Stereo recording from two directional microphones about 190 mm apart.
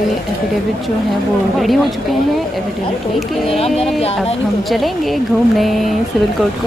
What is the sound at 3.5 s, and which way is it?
Speech, 30° left (ahead or behind).